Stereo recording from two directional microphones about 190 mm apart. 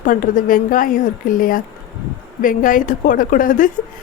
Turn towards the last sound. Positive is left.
turn(degrees=45)  # may be behind; listen again after turning